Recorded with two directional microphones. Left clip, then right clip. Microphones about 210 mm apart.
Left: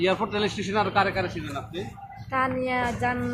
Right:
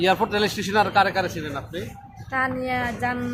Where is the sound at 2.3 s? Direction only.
Centre (ahead or behind).